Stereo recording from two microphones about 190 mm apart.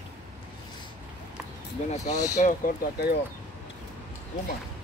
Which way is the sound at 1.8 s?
40° left (ahead or behind).